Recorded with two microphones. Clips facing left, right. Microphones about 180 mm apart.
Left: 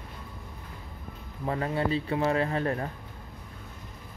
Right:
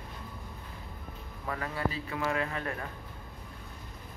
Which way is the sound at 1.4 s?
30° left (ahead or behind).